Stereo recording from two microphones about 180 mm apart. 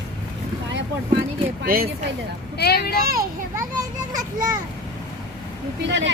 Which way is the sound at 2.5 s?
60° left (ahead or behind).